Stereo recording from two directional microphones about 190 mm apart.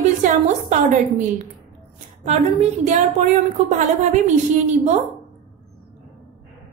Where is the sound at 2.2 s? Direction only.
35° right (ahead or behind).